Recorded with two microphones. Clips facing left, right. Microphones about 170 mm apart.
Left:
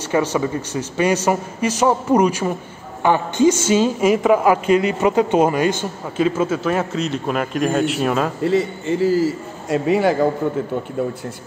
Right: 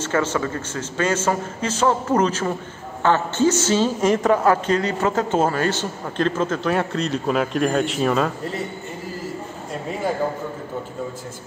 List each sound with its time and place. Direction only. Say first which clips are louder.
0.0 s a man's voice: left 3 dB; 15° left (ahead or behind)
8.5 s a man's voice: left 10 dB; 90° left